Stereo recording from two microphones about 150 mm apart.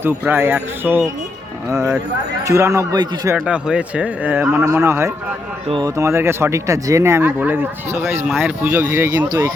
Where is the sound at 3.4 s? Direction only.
5° right (ahead or behind).